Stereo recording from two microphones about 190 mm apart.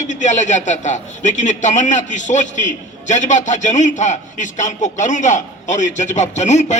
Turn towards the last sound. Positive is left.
turn(degrees=35)  # may be behind; listen again after turning